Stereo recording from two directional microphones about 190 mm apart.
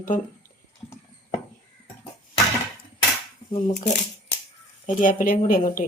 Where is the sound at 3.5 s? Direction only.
35° left (ahead or behind).